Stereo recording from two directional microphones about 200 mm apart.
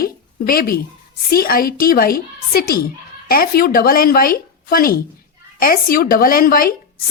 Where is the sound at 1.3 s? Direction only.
45° left (ahead or behind).